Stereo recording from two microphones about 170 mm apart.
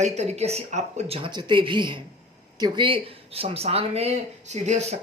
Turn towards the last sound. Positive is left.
turn(degrees=-40)  # may be behind; listen again after turning